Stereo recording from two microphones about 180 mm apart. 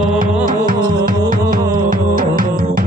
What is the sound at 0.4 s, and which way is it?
Music, 50° right (ahead or behind).